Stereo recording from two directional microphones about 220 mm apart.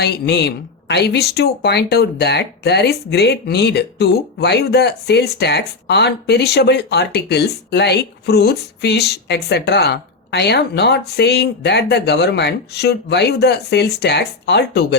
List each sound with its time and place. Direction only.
0.0 s speech: 50° left (ahead or behind)